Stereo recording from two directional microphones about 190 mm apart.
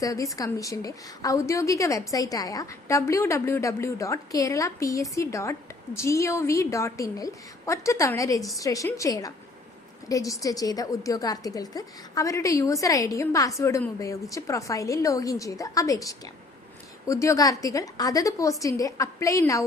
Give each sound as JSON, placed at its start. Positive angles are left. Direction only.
{"t": 0.0, "sound": "a woman's voice", "side_deg": 15}